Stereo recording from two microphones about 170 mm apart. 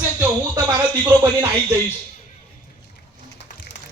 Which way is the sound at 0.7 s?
20° right (ahead or behind).